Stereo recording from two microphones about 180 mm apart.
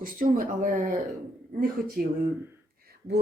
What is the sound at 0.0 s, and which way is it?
Speech, 50° right (ahead or behind).